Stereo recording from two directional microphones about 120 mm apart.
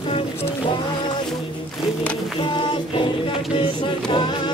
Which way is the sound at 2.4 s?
40° left (ahead or behind).